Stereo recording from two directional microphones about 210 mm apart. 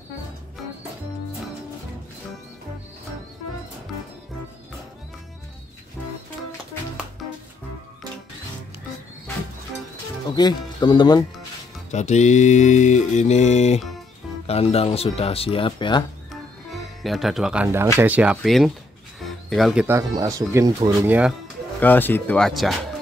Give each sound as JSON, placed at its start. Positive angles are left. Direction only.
{"t": 10.3, "sound": "speech", "side_deg": 20}
{"t": 11.9, "sound": "mantra", "side_deg": 35}
{"t": 14.4, "sound": "speech", "side_deg": 30}
{"t": 16.3, "sound": "music", "side_deg": 0}
{"t": 17.9, "sound": "speech", "side_deg": -5}
{"t": 19.1, "sound": "music", "side_deg": 0}
{"t": 20.2, "sound": "speech", "side_deg": -15}
{"t": 21.7, "sound": "speech", "side_deg": 10}